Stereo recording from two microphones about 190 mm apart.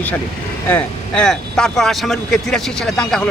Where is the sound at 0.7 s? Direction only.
5° left (ahead or behind).